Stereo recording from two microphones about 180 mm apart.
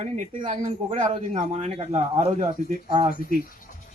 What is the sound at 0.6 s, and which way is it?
A man's voice, 45° right (ahead or behind).